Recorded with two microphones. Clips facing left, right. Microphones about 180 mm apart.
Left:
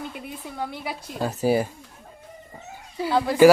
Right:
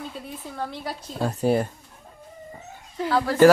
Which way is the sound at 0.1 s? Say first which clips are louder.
Even; 10° left (ahead or behind).